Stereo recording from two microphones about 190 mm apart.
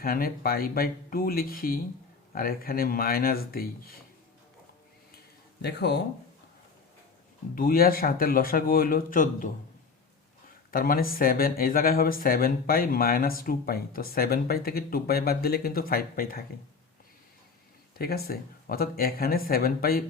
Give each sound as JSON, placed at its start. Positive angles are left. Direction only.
{"t": 0.0, "sound": "speech", "side_deg": 50}
{"t": 5.6, "sound": "speech", "side_deg": 60}
{"t": 7.5, "sound": "speech", "side_deg": 50}
{"t": 10.7, "sound": "speech", "side_deg": 50}
{"t": 17.9, "sound": "speech", "side_deg": 55}